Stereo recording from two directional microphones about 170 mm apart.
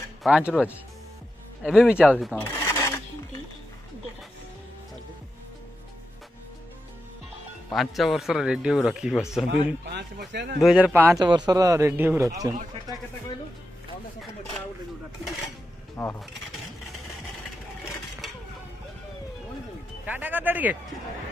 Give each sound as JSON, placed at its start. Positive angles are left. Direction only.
{"t": 0.2, "sound": "speech", "side_deg": -5}
{"t": 1.6, "sound": "a man's voice", "side_deg": -5}
{"t": 2.4, "sound": "filing", "side_deg": 15}
{"t": 7.7, "sound": "a man's voice", "side_deg": 0}
{"t": 9.8, "sound": "speech", "side_deg": -85}
{"t": 10.6, "sound": "speech", "side_deg": -5}
{"t": 11.1, "sound": "a man's voice", "side_deg": -25}
{"t": 16.0, "sound": "speech", "side_deg": 10}
{"t": 20.1, "sound": "speech", "side_deg": -10}